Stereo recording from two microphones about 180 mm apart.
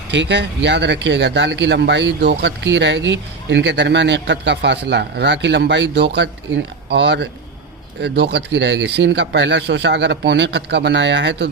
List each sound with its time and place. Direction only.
0.1 s speech: 75° right (ahead or behind)